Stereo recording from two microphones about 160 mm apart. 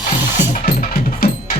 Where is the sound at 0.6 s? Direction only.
70° left (ahead or behind).